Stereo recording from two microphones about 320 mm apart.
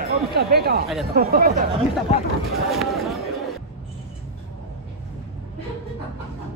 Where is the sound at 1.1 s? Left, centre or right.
Right.